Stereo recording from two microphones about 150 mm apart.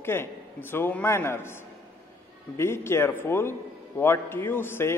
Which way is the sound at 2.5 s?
15° left (ahead or behind).